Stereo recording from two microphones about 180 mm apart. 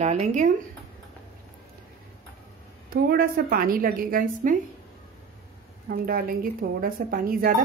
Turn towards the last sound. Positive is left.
turn(degrees=-50)  # may be behind; listen again after turning